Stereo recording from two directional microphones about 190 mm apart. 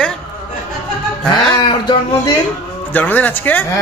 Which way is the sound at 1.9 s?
20° left (ahead or behind).